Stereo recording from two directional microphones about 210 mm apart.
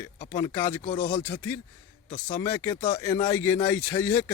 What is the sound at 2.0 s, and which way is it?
Speech, 35° left (ahead or behind).